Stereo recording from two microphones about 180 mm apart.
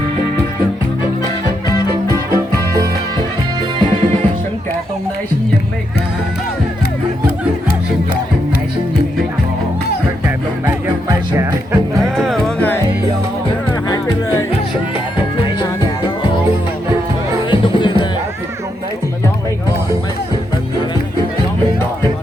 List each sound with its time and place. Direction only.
2.0 s music: 20° right (ahead or behind)
3.8 s music: 35° right (ahead or behind)
11.3 s music: 15° right (ahead or behind)
12.1 s music: centre (ahead or behind)
17.5 s music: 25° left (ahead or behind)